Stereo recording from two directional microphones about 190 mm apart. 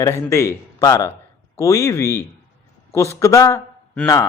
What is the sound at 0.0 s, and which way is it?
A man's voice, 15° left (ahead or behind).